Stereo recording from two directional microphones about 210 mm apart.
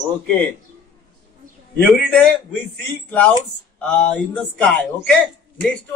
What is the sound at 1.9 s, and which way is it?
Speech, centre (ahead or behind).